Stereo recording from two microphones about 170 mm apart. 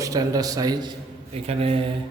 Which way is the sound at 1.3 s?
35° right (ahead or behind).